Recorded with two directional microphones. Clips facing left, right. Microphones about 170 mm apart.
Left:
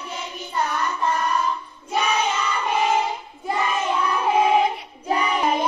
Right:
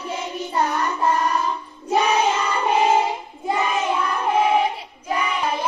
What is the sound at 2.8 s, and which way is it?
Child singing, 25° right (ahead or behind).